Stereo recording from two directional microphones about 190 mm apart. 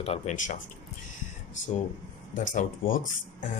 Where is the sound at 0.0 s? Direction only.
35° left (ahead or behind).